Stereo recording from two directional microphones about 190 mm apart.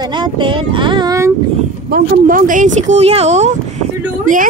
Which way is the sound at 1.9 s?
45° right (ahead or behind).